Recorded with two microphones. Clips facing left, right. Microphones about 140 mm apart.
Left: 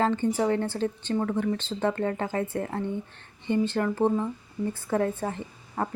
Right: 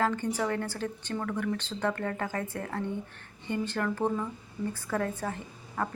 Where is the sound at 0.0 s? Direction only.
20° left (ahead or behind).